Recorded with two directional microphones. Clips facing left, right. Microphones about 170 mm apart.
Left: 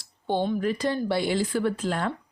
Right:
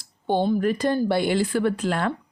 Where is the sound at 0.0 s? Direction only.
50° right (ahead or behind).